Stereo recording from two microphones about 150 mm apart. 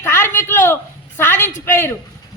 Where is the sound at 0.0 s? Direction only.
15° left (ahead or behind).